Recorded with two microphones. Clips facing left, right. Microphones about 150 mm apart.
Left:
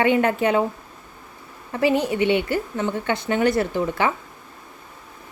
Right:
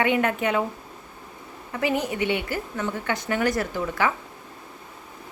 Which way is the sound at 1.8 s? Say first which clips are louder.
Left 5 dB; 25° left (ahead or behind).